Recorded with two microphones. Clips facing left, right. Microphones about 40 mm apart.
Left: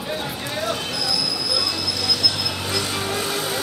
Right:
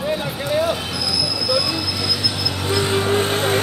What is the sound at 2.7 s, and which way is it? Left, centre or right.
Vehicle, right.